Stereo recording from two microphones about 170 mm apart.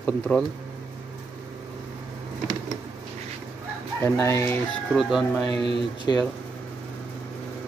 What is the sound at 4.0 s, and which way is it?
Speech, 15° left (ahead or behind).